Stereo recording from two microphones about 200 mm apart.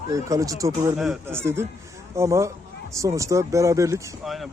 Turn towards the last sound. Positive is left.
turn(degrees=-15)  # may be behind; listen again after turning